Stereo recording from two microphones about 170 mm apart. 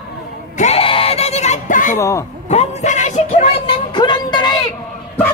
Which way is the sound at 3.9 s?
25° left (ahead or behind).